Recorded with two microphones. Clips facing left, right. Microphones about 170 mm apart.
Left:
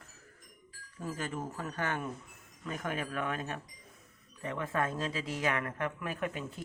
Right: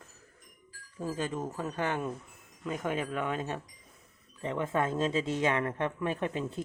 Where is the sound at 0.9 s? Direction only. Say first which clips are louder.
Right 4 dB; 20° right (ahead or behind).